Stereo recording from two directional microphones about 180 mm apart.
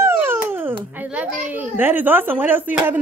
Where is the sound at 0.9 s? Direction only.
5° right (ahead or behind).